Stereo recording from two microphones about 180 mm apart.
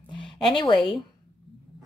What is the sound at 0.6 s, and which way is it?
Speech, 25° left (ahead or behind).